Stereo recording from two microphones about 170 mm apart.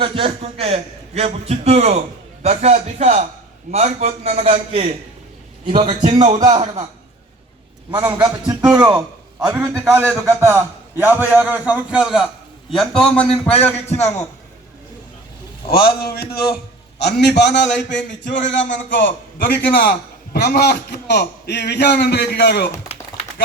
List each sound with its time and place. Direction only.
0.0 s a man's voice: 35° right (ahead or behind)
6.0 s speech: 45° right (ahead or behind)
6.4 s a man's voice: 25° right (ahead or behind)
7.9 s a man's voice: 25° right (ahead or behind)
9.5 s a man's voice: 10° right (ahead or behind); by 13.2 s 5° left (ahead or behind)
13.8 s a man's voice: 40° left (ahead or behind)
15.7 s a sound: 65° left (ahead or behind)
17.0 s a man's voice: 75° left (ahead or behind)
18.6 s a man's voice: 55° left (ahead or behind); by 22.7 s 70° left (ahead or behind)